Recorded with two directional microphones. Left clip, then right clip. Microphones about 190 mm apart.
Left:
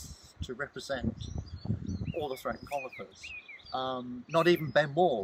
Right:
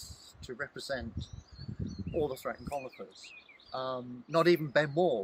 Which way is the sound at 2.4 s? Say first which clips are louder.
Left 2 dB; 30° right (ahead or behind).